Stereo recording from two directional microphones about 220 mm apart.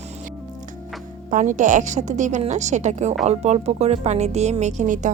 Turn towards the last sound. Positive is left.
turn(degrees=-35)  # may be behind; listen again after turning